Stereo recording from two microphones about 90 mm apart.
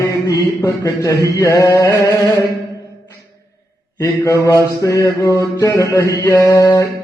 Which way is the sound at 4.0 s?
35° left (ahead or behind).